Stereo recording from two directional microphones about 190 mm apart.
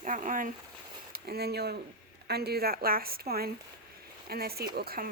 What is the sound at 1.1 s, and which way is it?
A woman's voice, 55° right (ahead or behind).